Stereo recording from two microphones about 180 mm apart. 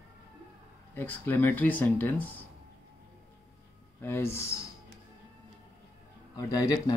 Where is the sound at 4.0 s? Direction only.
15° left (ahead or behind).